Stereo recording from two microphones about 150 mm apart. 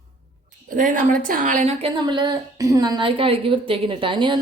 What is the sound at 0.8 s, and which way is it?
Speech, 60° right (ahead or behind).